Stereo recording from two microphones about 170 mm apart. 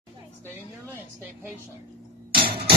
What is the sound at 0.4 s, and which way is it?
A woman's voice, 10° right (ahead or behind).